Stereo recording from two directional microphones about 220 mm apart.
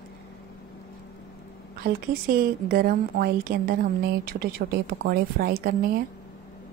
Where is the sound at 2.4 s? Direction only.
40° right (ahead or behind).